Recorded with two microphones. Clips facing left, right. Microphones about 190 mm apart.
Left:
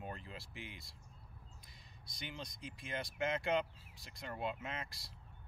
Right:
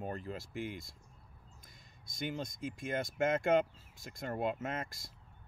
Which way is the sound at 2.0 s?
45° right (ahead or behind).